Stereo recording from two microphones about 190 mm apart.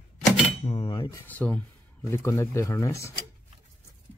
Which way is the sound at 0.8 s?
20° left (ahead or behind).